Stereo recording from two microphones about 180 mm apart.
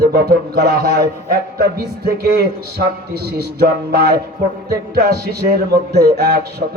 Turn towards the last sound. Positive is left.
turn(degrees=-60)  # may be behind; listen again after turning